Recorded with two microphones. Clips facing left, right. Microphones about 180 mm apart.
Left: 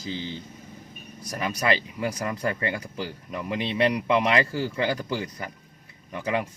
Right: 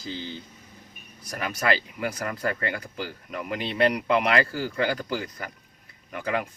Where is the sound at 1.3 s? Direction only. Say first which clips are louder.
Left 1 dB; 20° left (ahead or behind).